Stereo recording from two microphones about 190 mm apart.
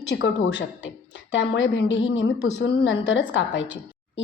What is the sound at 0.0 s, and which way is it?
A woman's voice, 65° left (ahead or behind).